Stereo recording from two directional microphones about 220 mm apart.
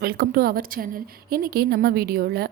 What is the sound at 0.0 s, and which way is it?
A woman's voice, 45° right (ahead or behind).